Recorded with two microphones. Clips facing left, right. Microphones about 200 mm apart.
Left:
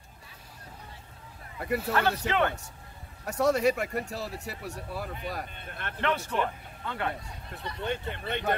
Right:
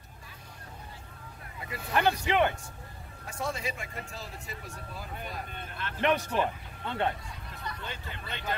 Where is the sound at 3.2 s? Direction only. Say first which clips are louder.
Left 11 dB; 70° left (ahead or behind).